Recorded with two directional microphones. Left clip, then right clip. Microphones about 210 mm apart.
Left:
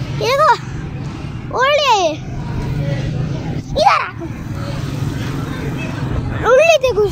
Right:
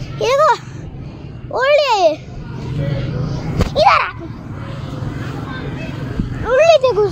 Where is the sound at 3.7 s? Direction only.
30° right (ahead or behind).